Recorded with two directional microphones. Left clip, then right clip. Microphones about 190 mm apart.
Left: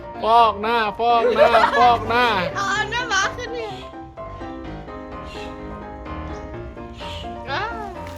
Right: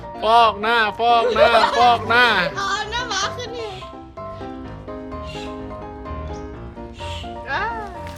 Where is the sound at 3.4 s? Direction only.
15° right (ahead or behind).